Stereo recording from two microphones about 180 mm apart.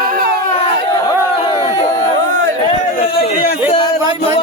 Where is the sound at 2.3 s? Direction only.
90° right.